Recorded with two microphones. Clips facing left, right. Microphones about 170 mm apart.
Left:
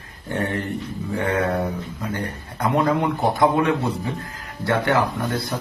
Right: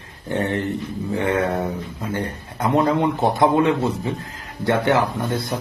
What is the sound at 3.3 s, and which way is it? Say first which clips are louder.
Speech: right 1 dB; 20° right (ahead or behind).